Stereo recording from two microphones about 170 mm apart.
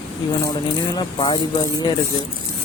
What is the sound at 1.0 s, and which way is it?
Speech, 25° left (ahead or behind).